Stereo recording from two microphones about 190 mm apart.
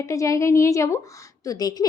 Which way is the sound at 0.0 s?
15° left (ahead or behind).